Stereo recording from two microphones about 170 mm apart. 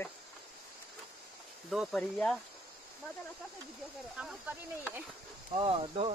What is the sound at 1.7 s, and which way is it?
Speech, centre (ahead or behind).